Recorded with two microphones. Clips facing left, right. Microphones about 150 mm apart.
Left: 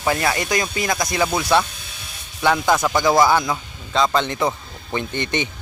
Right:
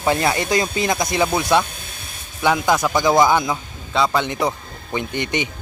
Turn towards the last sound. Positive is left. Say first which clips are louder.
# right 1 dB
turn(degrees=-15)  # may be behind; listen again after turning